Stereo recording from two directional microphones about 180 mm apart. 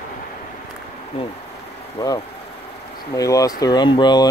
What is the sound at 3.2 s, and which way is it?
Speech, 20° left (ahead or behind).